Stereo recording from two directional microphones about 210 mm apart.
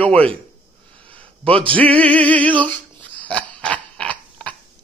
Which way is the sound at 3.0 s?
5° left (ahead or behind).